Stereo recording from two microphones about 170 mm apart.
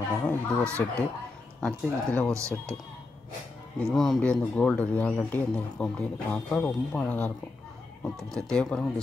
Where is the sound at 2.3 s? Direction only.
15° right (ahead or behind).